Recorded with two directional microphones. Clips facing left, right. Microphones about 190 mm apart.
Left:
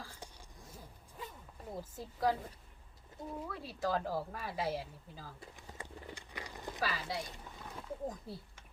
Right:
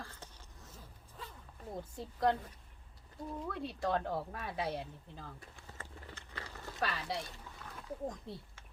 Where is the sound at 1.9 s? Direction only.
5° left (ahead or behind).